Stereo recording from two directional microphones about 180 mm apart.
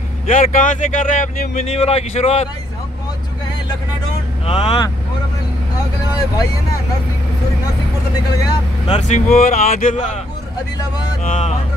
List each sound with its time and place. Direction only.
0.3 s speech: 45° left (ahead or behind)
4.5 s speech: 35° left (ahead or behind)
8.8 s speech: 40° left (ahead or behind)
11.2 s speech: 45° left (ahead or behind)